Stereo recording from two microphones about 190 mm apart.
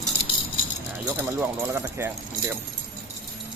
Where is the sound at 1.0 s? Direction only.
15° right (ahead or behind).